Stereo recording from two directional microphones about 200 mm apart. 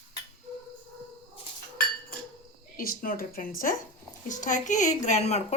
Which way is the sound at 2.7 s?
45° left (ahead or behind).